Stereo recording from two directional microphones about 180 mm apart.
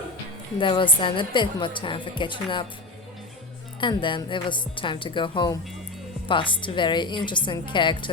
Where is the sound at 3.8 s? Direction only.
25° left (ahead or behind).